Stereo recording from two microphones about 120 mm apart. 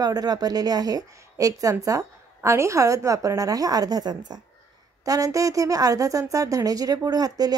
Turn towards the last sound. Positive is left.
turn(degrees=-30)  # may be behind; listen again after turning